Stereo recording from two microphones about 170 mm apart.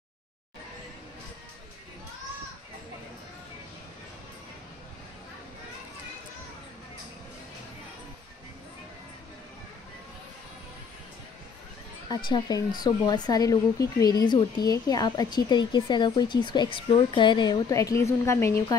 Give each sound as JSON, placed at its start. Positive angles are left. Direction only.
{"t": 12.1, "sound": "speech", "side_deg": 25}